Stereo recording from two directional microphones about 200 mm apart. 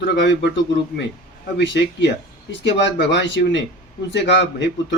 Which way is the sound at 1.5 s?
65° left (ahead or behind).